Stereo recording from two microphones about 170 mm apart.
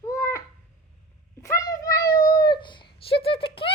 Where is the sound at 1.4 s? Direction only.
20° left (ahead or behind).